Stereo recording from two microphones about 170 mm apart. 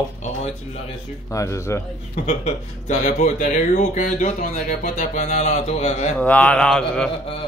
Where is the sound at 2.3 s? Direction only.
40° left (ahead or behind).